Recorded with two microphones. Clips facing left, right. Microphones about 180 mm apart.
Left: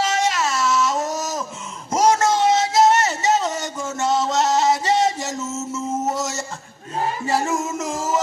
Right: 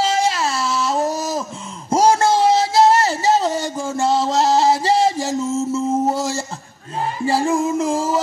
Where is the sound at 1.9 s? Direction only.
30° right (ahead or behind).